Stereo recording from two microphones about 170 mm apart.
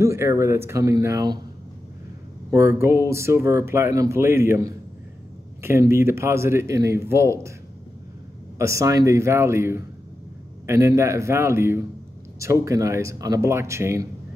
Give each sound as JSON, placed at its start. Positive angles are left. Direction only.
{"t": 0.0, "sound": "speech", "side_deg": -15}
{"t": 2.5, "sound": "speech", "side_deg": -15}
{"t": 8.5, "sound": "speech", "side_deg": -15}